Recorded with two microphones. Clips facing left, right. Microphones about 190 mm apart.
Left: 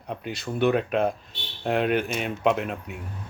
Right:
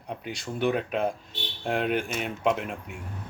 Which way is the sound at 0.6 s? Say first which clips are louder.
Left 4 dB; 65° left (ahead or behind).